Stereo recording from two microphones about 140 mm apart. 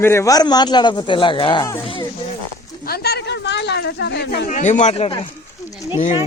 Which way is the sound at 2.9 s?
90° left.